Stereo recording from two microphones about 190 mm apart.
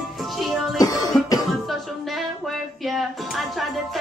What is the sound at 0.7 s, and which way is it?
Music, 20° left (ahead or behind).